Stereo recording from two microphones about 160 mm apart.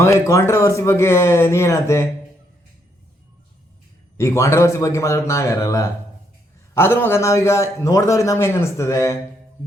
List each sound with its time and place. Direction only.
0.0 s a man's voice: 20° left (ahead or behind)
4.2 s a man's voice: 20° left (ahead or behind)